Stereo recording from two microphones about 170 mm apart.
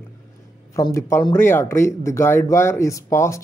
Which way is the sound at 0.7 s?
20° left (ahead or behind).